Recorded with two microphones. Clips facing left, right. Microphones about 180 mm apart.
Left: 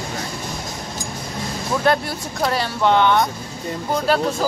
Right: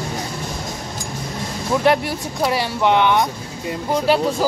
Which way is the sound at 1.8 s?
10° right (ahead or behind).